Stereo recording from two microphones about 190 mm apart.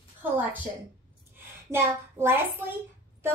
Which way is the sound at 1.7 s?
10° right (ahead or behind).